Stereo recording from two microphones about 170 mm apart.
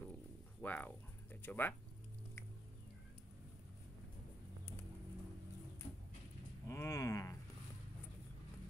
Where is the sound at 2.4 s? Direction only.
15° left (ahead or behind).